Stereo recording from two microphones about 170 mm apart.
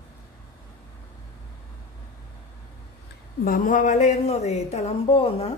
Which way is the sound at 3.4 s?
55° left (ahead or behind).